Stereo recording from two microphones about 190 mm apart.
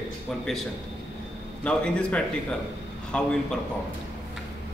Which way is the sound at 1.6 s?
5° left (ahead or behind).